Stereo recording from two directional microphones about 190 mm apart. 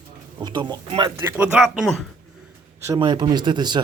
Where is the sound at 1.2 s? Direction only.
5° right (ahead or behind).